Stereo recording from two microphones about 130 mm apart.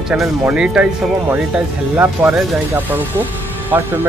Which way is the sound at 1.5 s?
20° right (ahead or behind).